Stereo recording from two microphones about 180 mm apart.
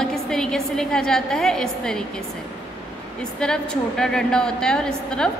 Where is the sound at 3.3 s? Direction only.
5° left (ahead or behind).